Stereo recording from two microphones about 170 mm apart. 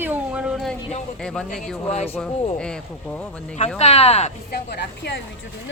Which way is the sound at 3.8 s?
40° left (ahead or behind).